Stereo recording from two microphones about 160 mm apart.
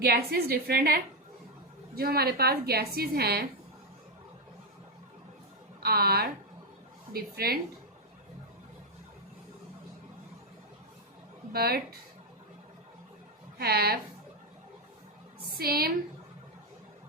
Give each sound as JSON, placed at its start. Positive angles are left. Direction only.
{"t": 0.0, "sound": "a woman's voice", "side_deg": -70}
{"t": 5.8, "sound": "a woman's voice", "side_deg": -75}
{"t": 11.5, "sound": "a woman's voice", "side_deg": -75}
{"t": 13.6, "sound": "a woman's voice", "side_deg": -75}
{"t": 15.4, "sound": "a woman's voice", "side_deg": -75}